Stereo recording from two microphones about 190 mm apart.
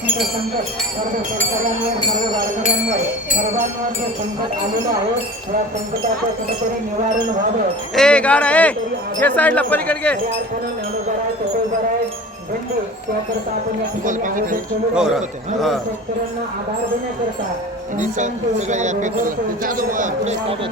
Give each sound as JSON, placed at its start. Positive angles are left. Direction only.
{"t": 7.9, "sound": "speech", "side_deg": 5}
{"t": 14.0, "sound": "speech", "side_deg": -45}
{"t": 14.9, "sound": "a man's voice", "side_deg": -5}
{"t": 18.7, "sound": "a man's voice", "side_deg": -40}